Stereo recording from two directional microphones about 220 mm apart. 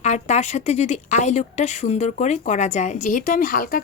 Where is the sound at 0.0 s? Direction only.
30° left (ahead or behind).